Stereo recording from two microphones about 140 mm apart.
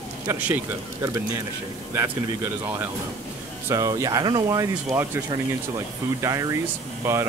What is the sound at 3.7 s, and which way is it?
Speech, 25° right (ahead or behind).